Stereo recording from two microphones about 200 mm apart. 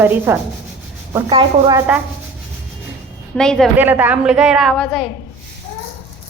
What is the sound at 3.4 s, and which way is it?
Speech, 5° left (ahead or behind).